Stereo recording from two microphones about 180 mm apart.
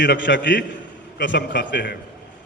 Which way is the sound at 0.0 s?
75° left (ahead or behind).